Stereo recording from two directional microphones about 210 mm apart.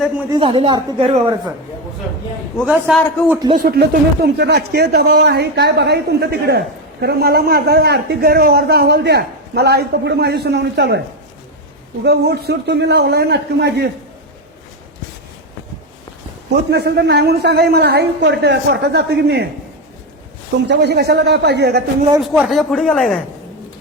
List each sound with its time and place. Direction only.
0.3 s speech: 25° right (ahead or behind)
2.6 s a man's voice: 10° right (ahead or behind)
3.5 s a man's voice: 45° right (ahead or behind)
12.0 s a man's voice: 50° right (ahead or behind)
16.5 s a man's voice: 55° right (ahead or behind)
20.7 s a man's voice: 50° right (ahead or behind)
22.2 s speech: centre (ahead or behind)